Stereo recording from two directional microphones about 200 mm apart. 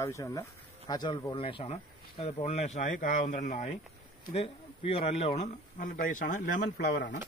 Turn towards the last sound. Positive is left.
turn(degrees=60)  # may be behind; listen again after turning